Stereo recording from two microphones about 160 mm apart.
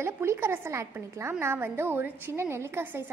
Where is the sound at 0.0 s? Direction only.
15° right (ahead or behind).